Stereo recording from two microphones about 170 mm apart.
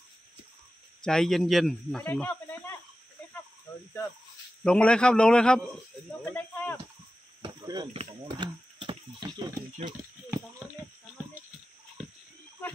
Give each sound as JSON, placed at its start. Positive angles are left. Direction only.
{"t": 1.0, "sound": "speech", "side_deg": 5}
{"t": 4.6, "sound": "speech", "side_deg": 5}
{"t": 7.4, "sound": "speech", "side_deg": -25}